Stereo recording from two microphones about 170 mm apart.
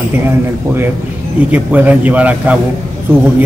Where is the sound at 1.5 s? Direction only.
10° right (ahead or behind).